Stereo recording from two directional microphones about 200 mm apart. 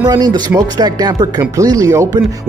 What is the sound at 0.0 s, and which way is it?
Speech, 20° right (ahead or behind).